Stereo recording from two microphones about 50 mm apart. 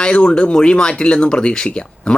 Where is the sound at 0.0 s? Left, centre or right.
Centre.